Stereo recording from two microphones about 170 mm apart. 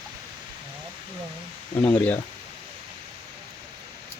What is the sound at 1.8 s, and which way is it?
Speech, 10° left (ahead or behind).